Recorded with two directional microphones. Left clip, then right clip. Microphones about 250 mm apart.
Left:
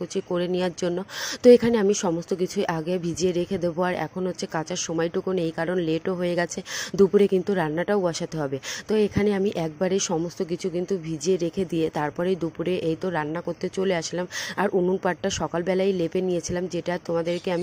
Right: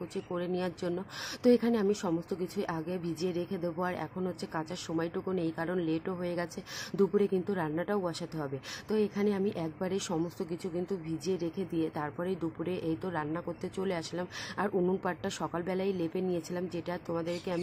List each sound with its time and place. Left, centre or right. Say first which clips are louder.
0.1 s speech: left 9 dB; left